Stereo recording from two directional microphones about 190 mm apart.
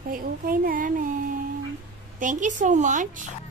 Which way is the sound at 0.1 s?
50° right (ahead or behind).